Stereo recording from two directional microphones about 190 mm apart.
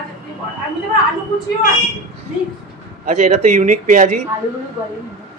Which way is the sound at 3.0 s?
40° right (ahead or behind).